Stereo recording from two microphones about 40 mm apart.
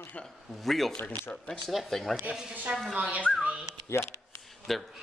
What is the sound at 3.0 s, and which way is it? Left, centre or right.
Speech, right.